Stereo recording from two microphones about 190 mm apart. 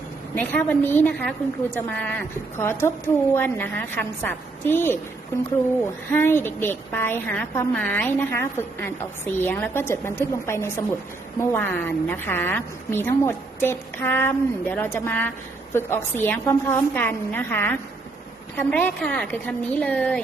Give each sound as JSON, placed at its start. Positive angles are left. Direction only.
{"t": 0.3, "sound": "a woman's voice", "side_deg": 10}